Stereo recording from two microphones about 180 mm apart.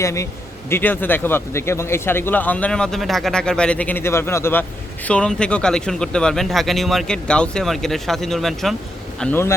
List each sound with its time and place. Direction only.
0.0 s a man's voice: 15° left (ahead or behind); by 8.7 s centre (ahead or behind)
9.2 s speech: 15° left (ahead or behind)